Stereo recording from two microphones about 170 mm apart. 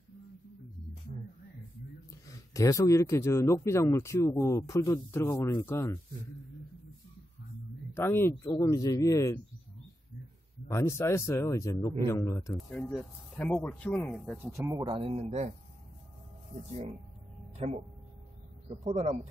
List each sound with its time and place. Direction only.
2.2 s speech: 20° left (ahead or behind)
7.9 s a man's voice: 15° left (ahead or behind)
10.7 s speech: 15° left (ahead or behind)
12.5 s speech: 5° left (ahead or behind)
14.9 s a man's voice: 30° right (ahead or behind)
17.6 s a man's voice: 40° right (ahead or behind)